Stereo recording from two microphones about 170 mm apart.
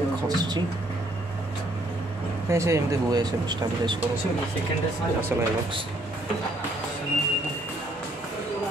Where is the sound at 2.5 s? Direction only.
15° right (ahead or behind).